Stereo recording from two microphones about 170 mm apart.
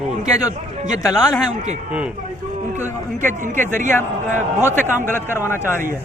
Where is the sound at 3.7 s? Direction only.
45° right (ahead or behind).